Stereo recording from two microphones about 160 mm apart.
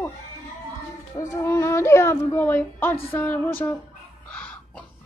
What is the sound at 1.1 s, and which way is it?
Speech, 20° left (ahead or behind).